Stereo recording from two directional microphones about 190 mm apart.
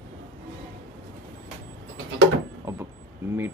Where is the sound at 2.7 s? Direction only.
15° right (ahead or behind).